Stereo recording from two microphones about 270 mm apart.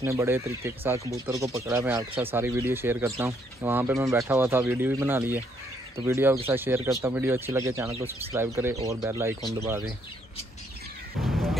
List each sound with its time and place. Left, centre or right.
0.0 s speech: centre
7.9 s speech: right
8.3 s speech: centre
11.2 s music: centre